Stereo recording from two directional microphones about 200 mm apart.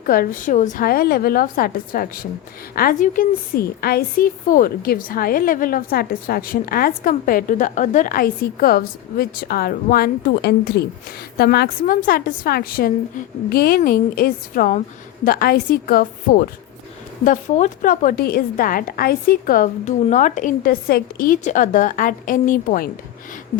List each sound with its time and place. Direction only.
0.0 s a woman's voice: 45° left (ahead or behind)